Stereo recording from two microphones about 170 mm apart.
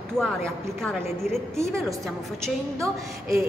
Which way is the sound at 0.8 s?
5° left (ahead or behind).